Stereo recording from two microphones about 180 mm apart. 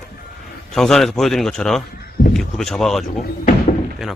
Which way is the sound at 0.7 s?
Centre (ahead or behind).